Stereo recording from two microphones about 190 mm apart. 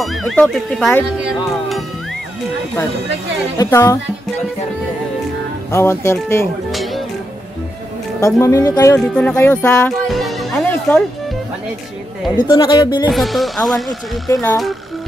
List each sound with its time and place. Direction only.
0.0 s speech: centre (ahead or behind)
3.5 s speech: 15° left (ahead or behind)
5.7 s speech: 15° left (ahead or behind)
6.7 s music: centre (ahead or behind)
8.4 s speech: 15° left (ahead or behind)
9.0 s speech: 5° left (ahead or behind)
10.7 s music: 10° left (ahead or behind)
12.4 s speech: 20° left (ahead or behind)
13.1 s speech: centre (ahead or behind)
14.3 s speech: 15° left (ahead or behind)